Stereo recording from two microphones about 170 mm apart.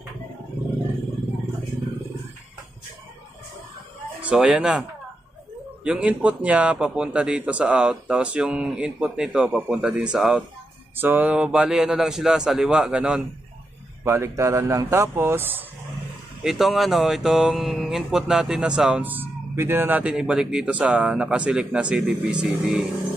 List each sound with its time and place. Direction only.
4.2 s speech: 5° right (ahead or behind)
5.9 s speech: 5° right (ahead or behind)
14.0 s speech: 15° right (ahead or behind)
16.4 s speech: centre (ahead or behind)